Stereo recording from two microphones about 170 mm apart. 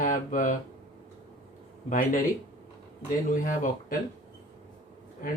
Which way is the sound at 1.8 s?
50° left (ahead or behind).